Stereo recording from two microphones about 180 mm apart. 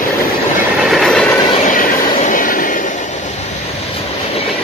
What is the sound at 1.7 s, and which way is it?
Train, 45° left (ahead or behind).